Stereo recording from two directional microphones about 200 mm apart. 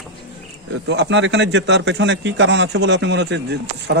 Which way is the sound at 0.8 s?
60° right (ahead or behind).